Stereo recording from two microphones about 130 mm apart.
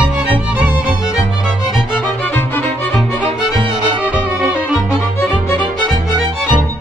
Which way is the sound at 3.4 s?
5° right (ahead or behind).